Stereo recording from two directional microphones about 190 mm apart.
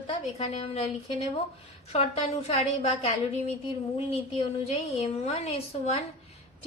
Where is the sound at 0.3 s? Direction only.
35° left (ahead or behind).